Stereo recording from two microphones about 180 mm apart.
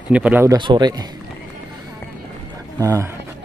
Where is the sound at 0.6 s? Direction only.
25° right (ahead or behind).